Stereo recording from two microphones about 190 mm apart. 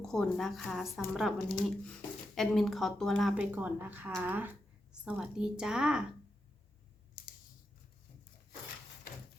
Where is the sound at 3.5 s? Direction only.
10° right (ahead or behind).